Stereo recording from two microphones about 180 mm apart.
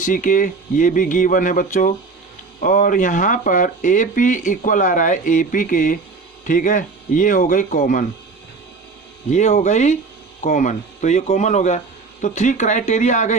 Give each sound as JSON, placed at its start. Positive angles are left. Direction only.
{"t": 0.0, "sound": "speech", "side_deg": 45}
{"t": 9.3, "sound": "speech", "side_deg": 40}